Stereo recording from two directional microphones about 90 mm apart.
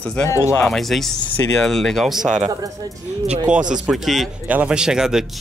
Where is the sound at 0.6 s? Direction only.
5° left (ahead or behind).